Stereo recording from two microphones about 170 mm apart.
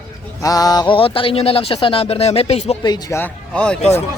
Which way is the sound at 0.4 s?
20° left (ahead or behind).